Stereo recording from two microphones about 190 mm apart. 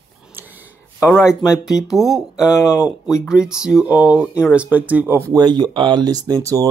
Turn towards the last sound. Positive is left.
turn(degrees=-20)  # may be behind; listen again after turning